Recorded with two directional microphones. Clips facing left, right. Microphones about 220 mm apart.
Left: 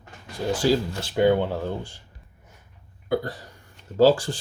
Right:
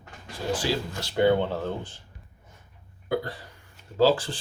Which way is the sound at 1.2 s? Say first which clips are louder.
Left 2 dB; 10° left (ahead or behind).